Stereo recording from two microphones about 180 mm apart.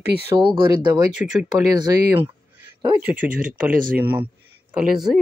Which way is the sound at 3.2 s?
50° right (ahead or behind).